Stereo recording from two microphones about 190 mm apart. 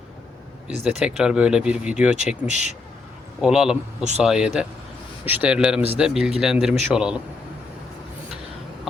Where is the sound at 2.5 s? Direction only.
40° left (ahead or behind).